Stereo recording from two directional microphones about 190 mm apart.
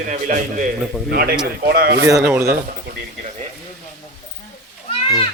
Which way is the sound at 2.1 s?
15° right (ahead or behind).